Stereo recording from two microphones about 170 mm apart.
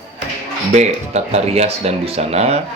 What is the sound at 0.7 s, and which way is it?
Speech, 40° right (ahead or behind).